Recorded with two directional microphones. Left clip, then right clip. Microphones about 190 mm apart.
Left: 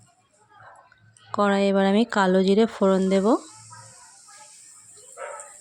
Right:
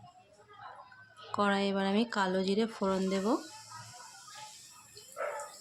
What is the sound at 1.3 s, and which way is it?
Speech, 40° left (ahead or behind).